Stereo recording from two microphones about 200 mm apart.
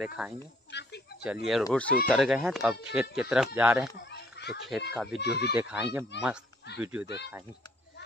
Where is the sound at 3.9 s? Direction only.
55° left (ahead or behind).